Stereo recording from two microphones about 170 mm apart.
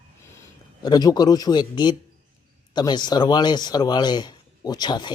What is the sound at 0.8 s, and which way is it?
A man's voice, 25° left (ahead or behind).